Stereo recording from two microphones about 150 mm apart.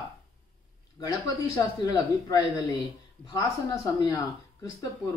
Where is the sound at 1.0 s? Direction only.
25° left (ahead or behind).